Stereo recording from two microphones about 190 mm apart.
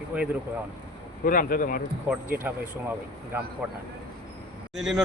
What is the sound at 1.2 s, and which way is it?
Speech, 50° left (ahead or behind).